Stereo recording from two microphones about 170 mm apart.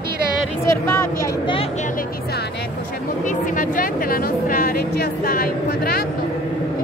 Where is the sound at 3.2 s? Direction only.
50° left (ahead or behind).